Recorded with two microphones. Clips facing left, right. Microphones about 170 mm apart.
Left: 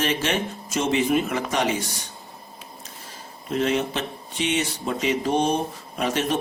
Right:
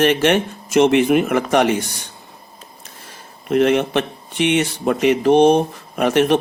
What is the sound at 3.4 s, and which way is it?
A man's voice, 65° right (ahead or behind).